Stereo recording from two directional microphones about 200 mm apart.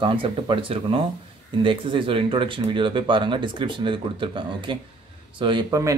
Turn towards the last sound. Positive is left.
turn(degrees=-15)  # may be behind; listen again after turning